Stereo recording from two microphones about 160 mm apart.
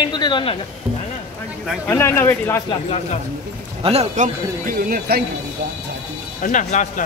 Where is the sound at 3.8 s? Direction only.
45° right (ahead or behind); by 5.2 s 70° right (ahead or behind).